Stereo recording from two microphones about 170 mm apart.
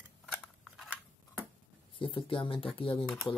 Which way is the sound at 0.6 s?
Centre (ahead or behind).